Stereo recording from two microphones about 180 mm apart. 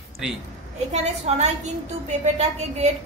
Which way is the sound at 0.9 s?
40° right (ahead or behind).